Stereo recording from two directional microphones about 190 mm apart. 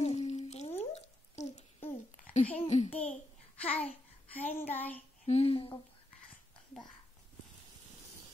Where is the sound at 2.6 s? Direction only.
40° left (ahead or behind).